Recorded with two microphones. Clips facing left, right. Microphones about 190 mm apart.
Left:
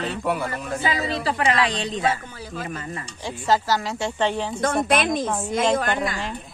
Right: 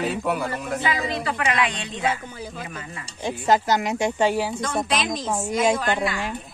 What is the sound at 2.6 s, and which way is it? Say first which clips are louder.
Speech: left 5 dB; 45° left (ahead or behind).